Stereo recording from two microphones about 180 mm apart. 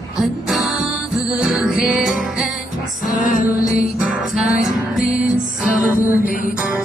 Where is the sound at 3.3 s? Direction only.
50° left (ahead or behind).